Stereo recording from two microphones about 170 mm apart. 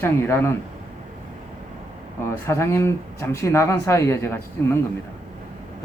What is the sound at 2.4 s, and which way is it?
Speech, 15° left (ahead or behind).